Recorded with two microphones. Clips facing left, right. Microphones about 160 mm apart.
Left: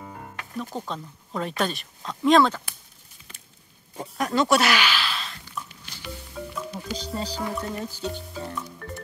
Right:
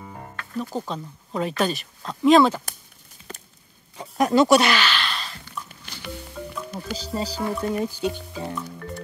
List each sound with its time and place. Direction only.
0.6 s speech: centre (ahead or behind)
3.3 s a sound: 40° right (ahead or behind)
4.4 s a sound: centre (ahead or behind)
5.7 s music: 55° right (ahead or behind)
6.4 s music: centre (ahead or behind)
7.0 s speech: 5° right (ahead or behind)
8.7 s music: centre (ahead or behind)